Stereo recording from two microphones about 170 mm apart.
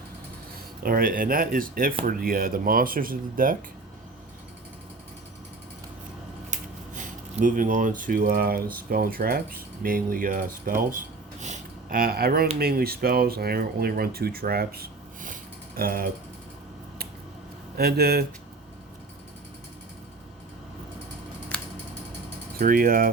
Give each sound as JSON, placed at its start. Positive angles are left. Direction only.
{"t": 0.8, "sound": "speech", "side_deg": -60}
{"t": 6.5, "sound": "a sound", "side_deg": -45}
{"t": 8.7, "sound": "speech", "side_deg": -60}
{"t": 10.8, "sound": "a sound", "side_deg": -50}
{"t": 12.5, "sound": "speech", "side_deg": -65}
{"t": 17.7, "sound": "speech", "side_deg": -65}
{"t": 22.5, "sound": "speech", "side_deg": -55}